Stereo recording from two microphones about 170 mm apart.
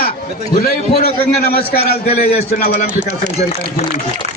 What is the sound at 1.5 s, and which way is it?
A man's voice, 65° left (ahead or behind).